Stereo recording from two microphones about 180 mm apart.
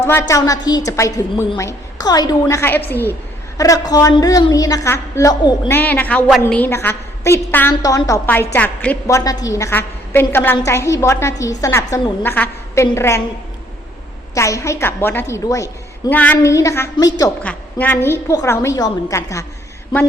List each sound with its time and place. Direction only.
0.0 s a woman's voice: 15° left (ahead or behind)
5.7 s a woman's voice: 10° left (ahead or behind)
14.3 s a woman's voice: 15° left (ahead or behind)
17.4 s a woman's voice: 10° left (ahead or behind)